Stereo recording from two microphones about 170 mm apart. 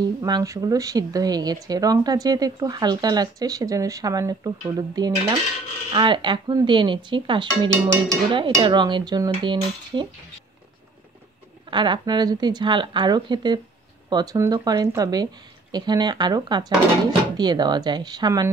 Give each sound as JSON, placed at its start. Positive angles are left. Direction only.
{"t": 0.2, "sound": "speech", "side_deg": -20}
{"t": 11.7, "sound": "speech", "side_deg": -30}